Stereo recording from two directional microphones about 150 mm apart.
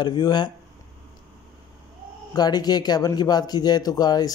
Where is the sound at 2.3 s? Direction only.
25° left (ahead or behind).